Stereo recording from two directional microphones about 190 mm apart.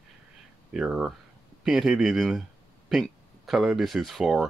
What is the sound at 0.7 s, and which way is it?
Speech, 5° right (ahead or behind).